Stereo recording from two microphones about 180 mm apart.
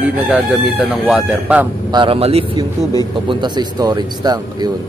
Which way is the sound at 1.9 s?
25° right (ahead or behind).